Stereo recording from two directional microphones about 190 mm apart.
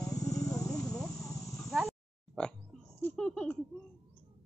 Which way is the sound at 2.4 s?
5° left (ahead or behind).